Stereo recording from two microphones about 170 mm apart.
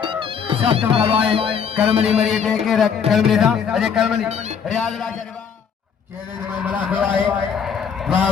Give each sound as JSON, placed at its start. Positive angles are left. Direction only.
{"t": 0.0, "sound": "music", "side_deg": -30}
{"t": 1.9, "sound": "a man's voice", "side_deg": -35}
{"t": 2.1, "sound": "a man's voice", "side_deg": 0}
{"t": 4.3, "sound": "a man's voice", "side_deg": -40}
{"t": 4.7, "sound": "a man's voice", "side_deg": 5}
{"t": 6.6, "sound": "a man's voice", "side_deg": -10}